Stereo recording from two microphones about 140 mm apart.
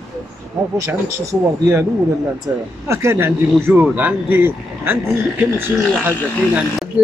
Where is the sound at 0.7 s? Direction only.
20° right (ahead or behind).